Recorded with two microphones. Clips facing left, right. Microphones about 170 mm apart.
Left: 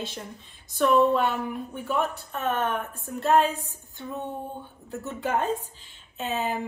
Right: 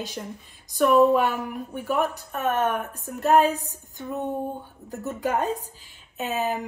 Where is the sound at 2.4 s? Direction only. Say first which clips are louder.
Right 3 dB; 40° right (ahead or behind).